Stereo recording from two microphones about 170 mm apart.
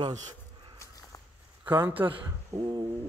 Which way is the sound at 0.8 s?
20° left (ahead or behind).